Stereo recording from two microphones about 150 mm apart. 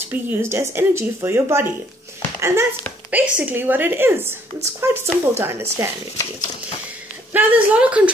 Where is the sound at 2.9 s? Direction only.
10° left (ahead or behind).